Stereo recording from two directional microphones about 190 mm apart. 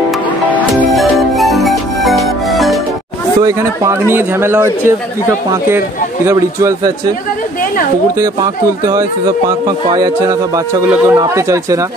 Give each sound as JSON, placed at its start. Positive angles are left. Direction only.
{"t": 0.5, "sound": "music", "side_deg": -5}
{"t": 3.3, "sound": "speech", "side_deg": -20}
{"t": 6.2, "sound": "speech", "side_deg": -15}
{"t": 8.2, "sound": "a man's voice", "side_deg": -15}